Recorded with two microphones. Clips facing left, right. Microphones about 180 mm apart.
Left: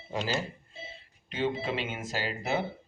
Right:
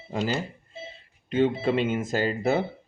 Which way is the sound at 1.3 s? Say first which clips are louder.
Right 8 dB; 50° right (ahead or behind).